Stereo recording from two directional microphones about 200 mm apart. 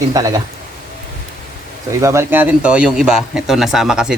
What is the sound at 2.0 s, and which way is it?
Speech, 15° right (ahead or behind).